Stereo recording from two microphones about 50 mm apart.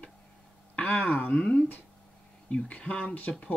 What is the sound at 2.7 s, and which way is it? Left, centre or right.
Speech, left.